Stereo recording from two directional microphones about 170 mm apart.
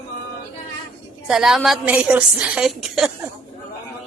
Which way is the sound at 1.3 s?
5° right (ahead or behind).